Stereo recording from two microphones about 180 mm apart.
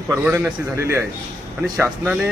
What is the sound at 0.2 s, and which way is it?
A man's voice, 10° right (ahead or behind).